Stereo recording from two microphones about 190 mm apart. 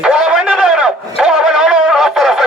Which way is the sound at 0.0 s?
5° right (ahead or behind).